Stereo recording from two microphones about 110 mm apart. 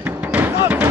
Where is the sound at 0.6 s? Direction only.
15° right (ahead or behind).